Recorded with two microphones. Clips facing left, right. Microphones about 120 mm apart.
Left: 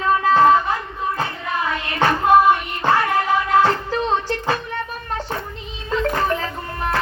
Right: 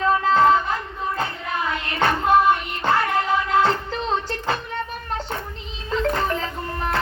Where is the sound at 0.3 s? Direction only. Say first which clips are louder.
Left 4 dB; 5° left (ahead or behind).